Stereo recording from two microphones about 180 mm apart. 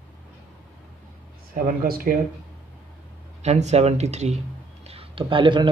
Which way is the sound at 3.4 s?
40° right (ahead or behind).